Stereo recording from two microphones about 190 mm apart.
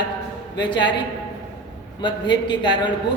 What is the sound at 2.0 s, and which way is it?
Speech, 25° left (ahead or behind).